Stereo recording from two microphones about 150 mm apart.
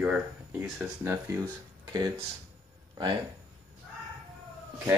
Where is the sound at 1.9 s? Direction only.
25° right (ahead or behind).